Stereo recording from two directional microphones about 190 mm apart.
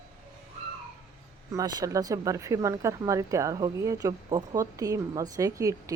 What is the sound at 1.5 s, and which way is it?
Speech, 20° right (ahead or behind).